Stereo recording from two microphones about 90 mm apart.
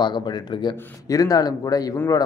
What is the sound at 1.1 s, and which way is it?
Speech, 45° left (ahead or behind).